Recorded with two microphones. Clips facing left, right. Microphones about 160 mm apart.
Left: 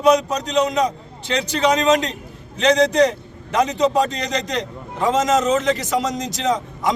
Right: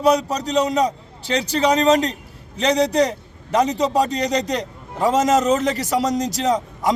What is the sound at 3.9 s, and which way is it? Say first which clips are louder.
Speech: right 1 dB; 35° right (ahead or behind).